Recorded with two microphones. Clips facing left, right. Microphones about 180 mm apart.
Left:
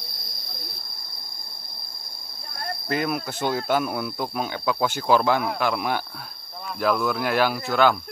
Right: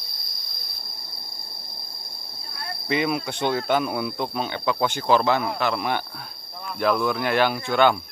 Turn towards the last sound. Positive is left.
turn(degrees=5)  # may be behind; listen again after turning